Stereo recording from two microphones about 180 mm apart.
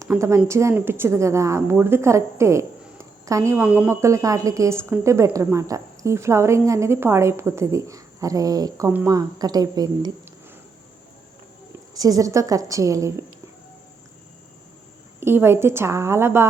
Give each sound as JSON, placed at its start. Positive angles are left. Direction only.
{"t": 0.0, "sound": "a woman's voice", "side_deg": -15}
{"t": 8.9, "sound": "a woman's voice", "side_deg": -10}
{"t": 9.1, "sound": "a woman's voice", "side_deg": -20}
{"t": 11.9, "sound": "a woman's voice", "side_deg": -20}
{"t": 15.2, "sound": "a woman's voice", "side_deg": -15}